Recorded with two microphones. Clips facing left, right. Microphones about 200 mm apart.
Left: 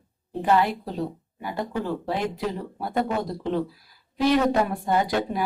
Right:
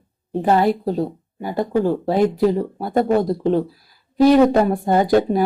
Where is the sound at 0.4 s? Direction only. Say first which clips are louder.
Right 5 dB; 40° right (ahead or behind).